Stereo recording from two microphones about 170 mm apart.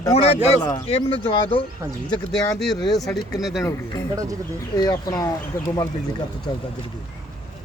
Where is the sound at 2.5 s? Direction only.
Centre (ahead or behind).